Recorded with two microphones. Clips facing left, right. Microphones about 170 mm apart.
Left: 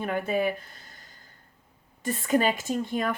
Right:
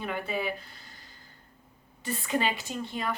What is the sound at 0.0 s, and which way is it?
Speech, 50° left (ahead or behind).